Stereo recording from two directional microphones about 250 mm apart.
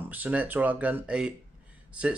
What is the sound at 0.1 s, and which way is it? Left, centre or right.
Speech, centre.